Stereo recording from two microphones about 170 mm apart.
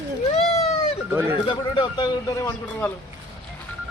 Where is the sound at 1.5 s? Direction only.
25° left (ahead or behind).